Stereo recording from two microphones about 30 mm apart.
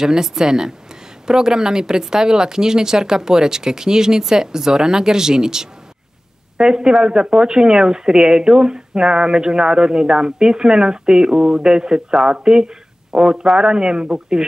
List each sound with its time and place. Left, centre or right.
0.0 s speech: centre